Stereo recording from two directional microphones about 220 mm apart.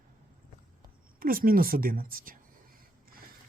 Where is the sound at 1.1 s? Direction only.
40° right (ahead or behind).